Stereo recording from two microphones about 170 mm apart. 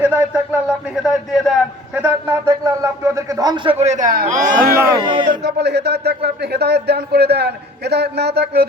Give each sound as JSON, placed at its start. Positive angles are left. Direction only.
{"t": 0.0, "sound": "speech", "side_deg": -5}
{"t": 5.0, "sound": "speech", "side_deg": -30}
{"t": 5.4, "sound": "speech", "side_deg": -80}